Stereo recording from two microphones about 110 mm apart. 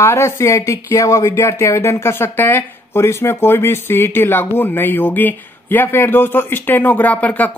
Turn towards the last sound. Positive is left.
turn(degrees=15)  # may be behind; listen again after turning